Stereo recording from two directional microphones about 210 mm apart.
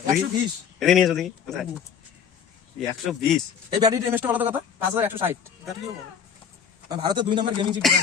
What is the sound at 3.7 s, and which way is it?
Speech, 15° right (ahead or behind).